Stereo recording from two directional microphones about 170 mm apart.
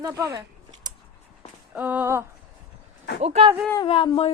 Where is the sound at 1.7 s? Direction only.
10° right (ahead or behind).